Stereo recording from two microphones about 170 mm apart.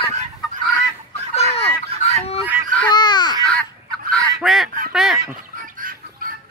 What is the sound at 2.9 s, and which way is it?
Baby cry, 25° left (ahead or behind).